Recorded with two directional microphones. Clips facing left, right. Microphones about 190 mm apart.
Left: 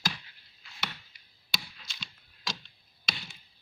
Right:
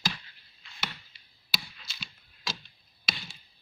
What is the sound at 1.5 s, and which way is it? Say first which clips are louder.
Chop: right 1 dB; 5° right (ahead or behind).